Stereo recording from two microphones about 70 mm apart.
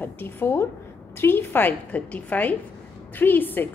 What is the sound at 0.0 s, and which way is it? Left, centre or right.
A woman's voice, left.